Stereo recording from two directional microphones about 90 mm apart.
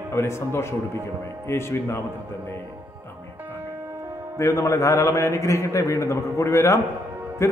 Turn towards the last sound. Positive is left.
turn(degrees=30)  # may be behind; listen again after turning